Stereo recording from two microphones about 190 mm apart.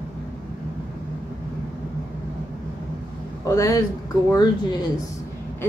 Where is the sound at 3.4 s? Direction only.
15° left (ahead or behind).